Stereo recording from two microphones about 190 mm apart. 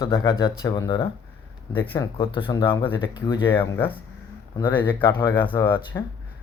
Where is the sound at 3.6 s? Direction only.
10° left (ahead or behind).